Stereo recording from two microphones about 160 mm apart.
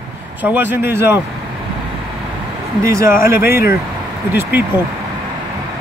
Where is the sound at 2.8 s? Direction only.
15° right (ahead or behind).